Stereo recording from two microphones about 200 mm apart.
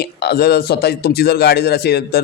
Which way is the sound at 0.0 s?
55° left (ahead or behind).